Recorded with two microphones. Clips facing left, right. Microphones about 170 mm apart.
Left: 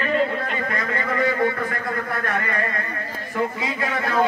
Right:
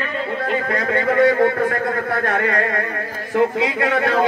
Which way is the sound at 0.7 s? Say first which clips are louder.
Right 9 dB; 65° right (ahead or behind).